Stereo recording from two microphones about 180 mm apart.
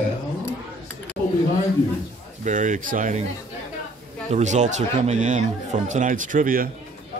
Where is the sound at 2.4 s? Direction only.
45° right (ahead or behind).